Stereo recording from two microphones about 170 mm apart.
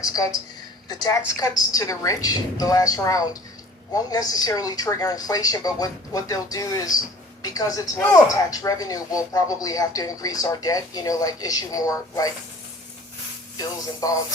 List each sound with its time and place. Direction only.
0.0 s speech: 20° left (ahead or behind)
13.6 s speech: 20° left (ahead or behind)